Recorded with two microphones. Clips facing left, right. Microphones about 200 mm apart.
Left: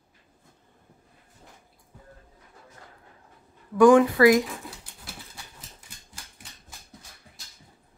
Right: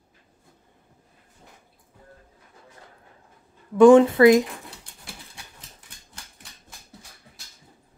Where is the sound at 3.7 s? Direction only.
25° right (ahead or behind).